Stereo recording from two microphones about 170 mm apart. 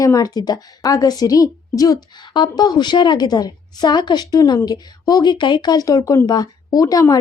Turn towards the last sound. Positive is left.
turn(degrees=20)  # may be behind; listen again after turning